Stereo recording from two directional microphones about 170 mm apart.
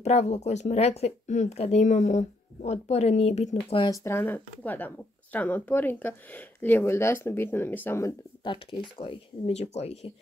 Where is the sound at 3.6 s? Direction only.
30° left (ahead or behind).